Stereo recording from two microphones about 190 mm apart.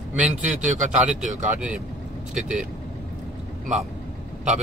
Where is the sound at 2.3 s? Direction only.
5° right (ahead or behind).